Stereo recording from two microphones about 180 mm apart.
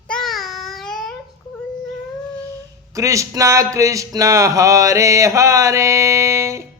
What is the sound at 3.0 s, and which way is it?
Mantra, 15° right (ahead or behind).